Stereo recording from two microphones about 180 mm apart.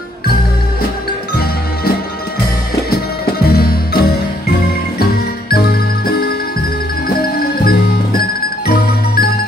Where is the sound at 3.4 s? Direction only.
60° left (ahead or behind).